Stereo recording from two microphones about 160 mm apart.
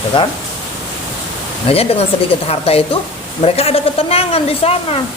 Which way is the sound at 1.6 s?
40° left (ahead or behind).